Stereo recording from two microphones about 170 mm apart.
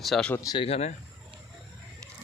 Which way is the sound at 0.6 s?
35° left (ahead or behind).